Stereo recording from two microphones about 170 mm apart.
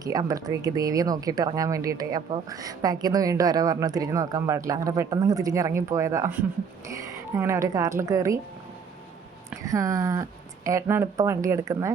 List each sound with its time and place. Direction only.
0.0 s speech: 20° right (ahead or behind)
9.6 s speech: 20° right (ahead or behind)